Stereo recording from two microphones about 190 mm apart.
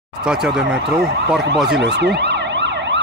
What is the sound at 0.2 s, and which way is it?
Speech, 5° right (ahead or behind).